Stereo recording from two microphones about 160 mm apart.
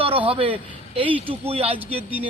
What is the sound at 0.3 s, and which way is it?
A man's voice, 35° right (ahead or behind).